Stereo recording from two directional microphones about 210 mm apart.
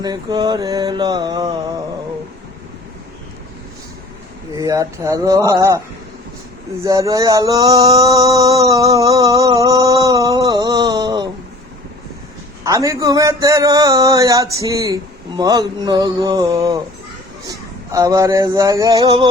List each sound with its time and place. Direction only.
0.0 s mantra: 20° right (ahead or behind)
4.5 s a man's voice: 15° right (ahead or behind)
6.8 s a man's voice: 15° right (ahead or behind)
9.6 s a sound: 15° right (ahead or behind)
12.6 s a man's voice: 15° right (ahead or behind)
17.9 s a man's voice: 15° right (ahead or behind)